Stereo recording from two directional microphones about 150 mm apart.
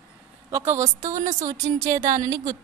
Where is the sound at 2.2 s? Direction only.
20° right (ahead or behind).